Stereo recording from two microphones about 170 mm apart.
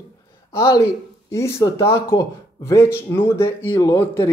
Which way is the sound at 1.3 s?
15° left (ahead or behind).